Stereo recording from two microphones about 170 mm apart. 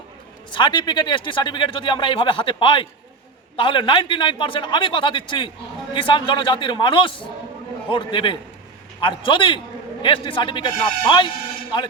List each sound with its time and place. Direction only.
0.5 s speech: 30° left (ahead or behind)